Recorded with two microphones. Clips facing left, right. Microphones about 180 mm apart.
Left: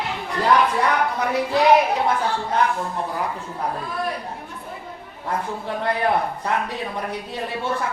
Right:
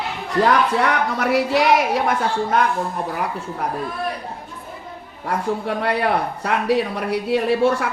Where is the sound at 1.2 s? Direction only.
85° right.